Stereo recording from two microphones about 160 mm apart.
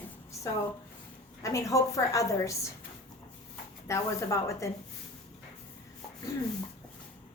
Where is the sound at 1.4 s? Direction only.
20° left (ahead or behind).